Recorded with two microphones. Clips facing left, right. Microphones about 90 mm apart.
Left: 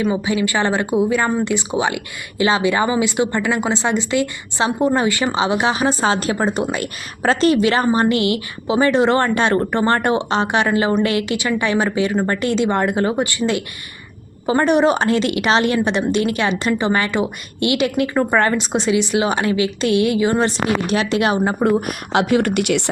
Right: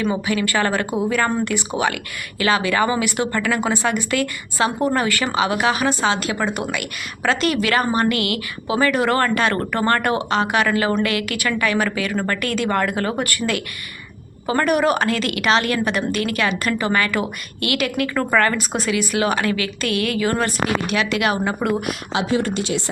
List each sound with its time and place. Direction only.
0.0 s a woman's voice: 15° left (ahead or behind); by 21.8 s 30° left (ahead or behind)
21.8 s speech: 60° left (ahead or behind)